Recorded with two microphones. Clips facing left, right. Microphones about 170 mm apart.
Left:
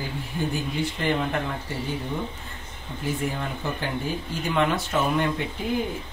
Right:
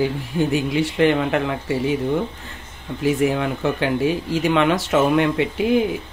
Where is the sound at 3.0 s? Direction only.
85° right.